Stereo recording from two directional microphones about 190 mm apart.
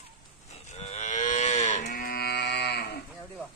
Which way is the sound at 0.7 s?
35° left (ahead or behind).